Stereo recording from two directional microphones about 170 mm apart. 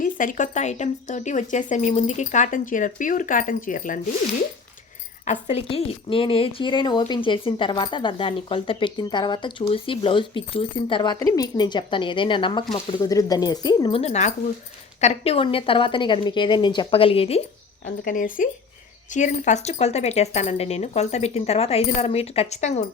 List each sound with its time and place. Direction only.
0.0 s speech: 50° left (ahead or behind)
5.2 s a woman's voice: 45° left (ahead or behind); by 14.0 s 25° left (ahead or behind)
14.0 s speech: 40° left (ahead or behind)
17.8 s speech: 50° left (ahead or behind)